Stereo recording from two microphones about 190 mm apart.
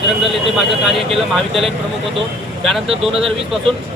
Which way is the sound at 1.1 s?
30° right (ahead or behind).